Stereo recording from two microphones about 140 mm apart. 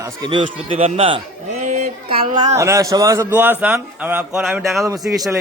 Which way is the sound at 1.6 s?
55° right (ahead or behind).